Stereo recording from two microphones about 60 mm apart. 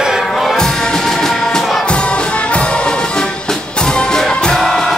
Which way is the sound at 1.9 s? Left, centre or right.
Centre.